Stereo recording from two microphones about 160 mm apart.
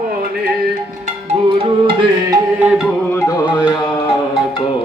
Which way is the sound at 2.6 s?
5° right (ahead or behind).